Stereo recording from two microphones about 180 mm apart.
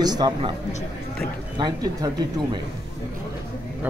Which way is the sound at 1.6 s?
20° right (ahead or behind).